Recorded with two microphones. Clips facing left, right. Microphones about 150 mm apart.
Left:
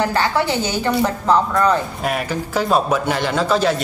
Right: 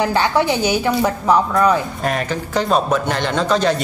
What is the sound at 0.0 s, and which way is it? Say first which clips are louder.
A woman's voice: right 2 dB; 15° right (ahead or behind).